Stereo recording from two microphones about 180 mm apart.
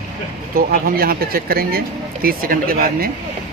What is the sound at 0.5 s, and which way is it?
Speech, 55° right (ahead or behind).